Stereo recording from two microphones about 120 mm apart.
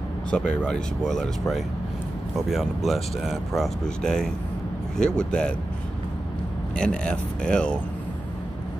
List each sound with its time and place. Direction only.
0.3 s speech: 10° left (ahead or behind)
6.8 s speech: 5° left (ahead or behind)